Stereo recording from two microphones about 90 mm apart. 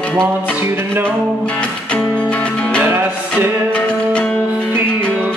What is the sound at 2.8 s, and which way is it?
Music, 20° right (ahead or behind).